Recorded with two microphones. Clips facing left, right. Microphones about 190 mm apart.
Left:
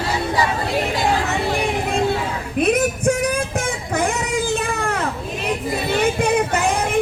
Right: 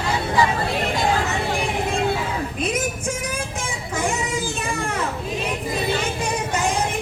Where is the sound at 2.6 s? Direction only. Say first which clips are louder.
Left 10 dB; 60° left (ahead or behind).